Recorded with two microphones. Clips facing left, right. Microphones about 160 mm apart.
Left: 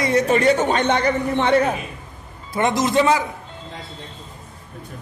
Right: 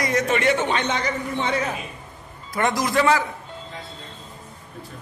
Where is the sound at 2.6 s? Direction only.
20° left (ahead or behind).